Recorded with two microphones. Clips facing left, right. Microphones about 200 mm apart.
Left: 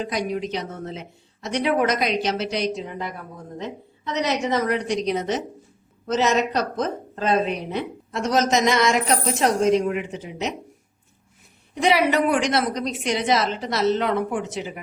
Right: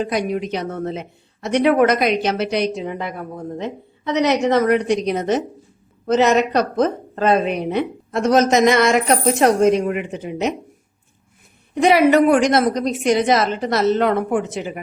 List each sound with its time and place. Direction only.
0.0 s speech: 60° right (ahead or behind)
11.7 s a woman's voice: 50° right (ahead or behind)